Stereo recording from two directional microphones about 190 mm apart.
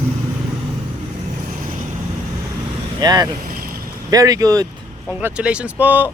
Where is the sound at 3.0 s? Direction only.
20° right (ahead or behind).